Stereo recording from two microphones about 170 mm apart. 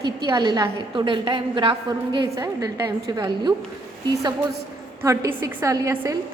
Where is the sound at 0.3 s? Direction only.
25° right (ahead or behind).